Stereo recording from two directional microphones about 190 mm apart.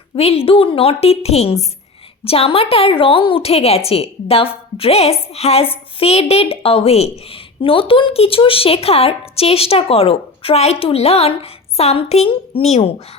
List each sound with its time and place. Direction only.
0.2 s a woman's voice: 30° left (ahead or behind)